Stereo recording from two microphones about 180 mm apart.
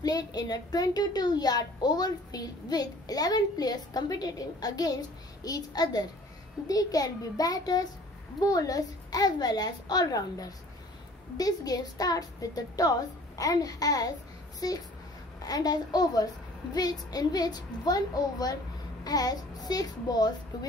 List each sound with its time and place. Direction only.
0.0 s a woman's voice: 20° left (ahead or behind)